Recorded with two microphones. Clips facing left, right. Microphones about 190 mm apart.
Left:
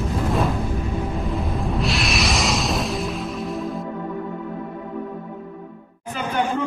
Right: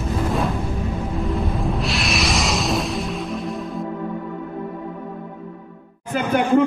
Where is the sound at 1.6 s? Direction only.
Centre (ahead or behind).